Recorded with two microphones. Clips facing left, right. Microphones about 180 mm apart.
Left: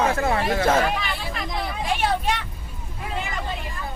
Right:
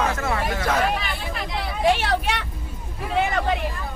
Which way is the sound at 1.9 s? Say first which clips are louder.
Left 1 dB; 75° right (ahead or behind).